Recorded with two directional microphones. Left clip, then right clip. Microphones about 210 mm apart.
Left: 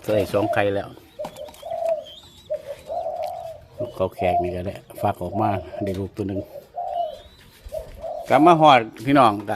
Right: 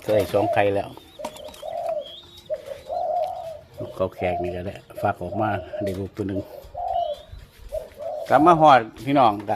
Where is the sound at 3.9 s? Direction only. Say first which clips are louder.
Left 3 dB; 5° left (ahead or behind).